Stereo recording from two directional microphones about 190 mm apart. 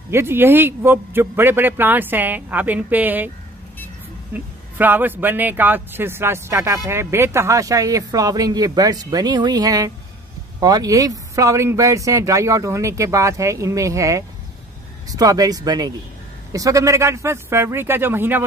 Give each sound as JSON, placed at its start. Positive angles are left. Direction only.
{"t": 0.1, "sound": "speech", "side_deg": -15}
{"t": 4.3, "sound": "speech", "side_deg": -10}